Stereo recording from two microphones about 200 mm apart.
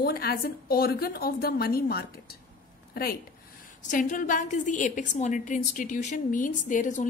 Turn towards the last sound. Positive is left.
turn(degrees=40)  # may be behind; listen again after turning